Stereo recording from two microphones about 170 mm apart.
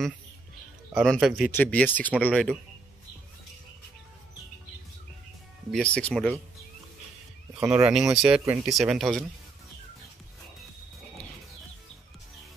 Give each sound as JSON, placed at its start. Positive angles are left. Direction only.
{"t": 1.0, "sound": "speech", "side_deg": 0}
{"t": 5.7, "sound": "speech", "side_deg": 5}
{"t": 7.5, "sound": "speech", "side_deg": -5}